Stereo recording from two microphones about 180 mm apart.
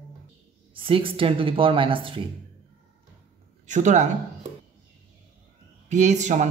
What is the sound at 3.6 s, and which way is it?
Speech, 45° right (ahead or behind).